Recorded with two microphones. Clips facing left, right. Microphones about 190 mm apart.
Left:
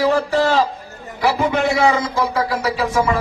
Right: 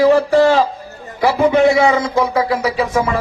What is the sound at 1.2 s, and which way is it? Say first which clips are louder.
A man's voice: right 6 dB; 55° right (ahead or behind).